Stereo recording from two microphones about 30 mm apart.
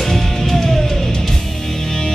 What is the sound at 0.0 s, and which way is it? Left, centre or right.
Music, centre.